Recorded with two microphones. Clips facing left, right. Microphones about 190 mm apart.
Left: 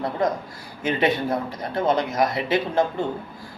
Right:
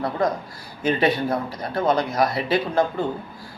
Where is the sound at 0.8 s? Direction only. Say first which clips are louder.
Right 1 dB; 20° left (ahead or behind).